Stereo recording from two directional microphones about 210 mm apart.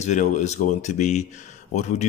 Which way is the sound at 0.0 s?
35° left (ahead or behind).